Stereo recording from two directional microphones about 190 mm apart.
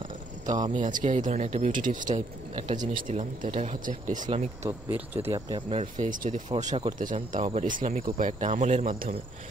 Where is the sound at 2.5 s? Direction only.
30° right (ahead or behind).